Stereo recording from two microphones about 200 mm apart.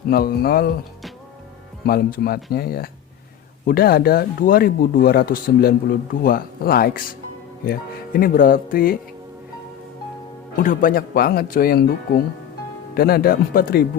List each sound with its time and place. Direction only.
0.1 s speech: 50° left (ahead or behind)
1.9 s speech: 50° left (ahead or behind)
10.6 s speech: 40° left (ahead or behind)